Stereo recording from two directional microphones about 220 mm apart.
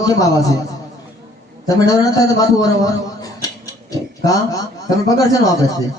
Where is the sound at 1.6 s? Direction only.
15° left (ahead or behind).